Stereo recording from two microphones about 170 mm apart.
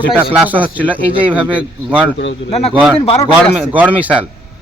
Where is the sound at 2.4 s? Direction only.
35° left (ahead or behind).